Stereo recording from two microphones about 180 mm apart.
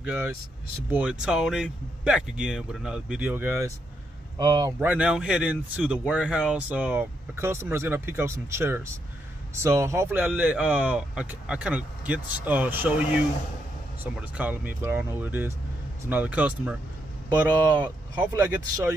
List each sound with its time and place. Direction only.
0.0 s speech: 10° right (ahead or behind)
4.7 s speech: 10° right (ahead or behind)
17.7 s speech: 25° right (ahead or behind)
18.4 s speech: 10° right (ahead or behind)